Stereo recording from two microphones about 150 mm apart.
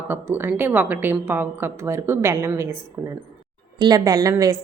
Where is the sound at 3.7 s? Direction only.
30° right (ahead or behind).